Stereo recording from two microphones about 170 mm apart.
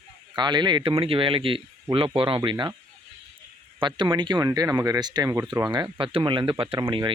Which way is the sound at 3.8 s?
30° right (ahead or behind).